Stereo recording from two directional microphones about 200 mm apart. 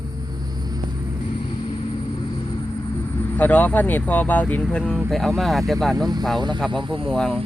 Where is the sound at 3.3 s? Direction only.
10° left (ahead or behind).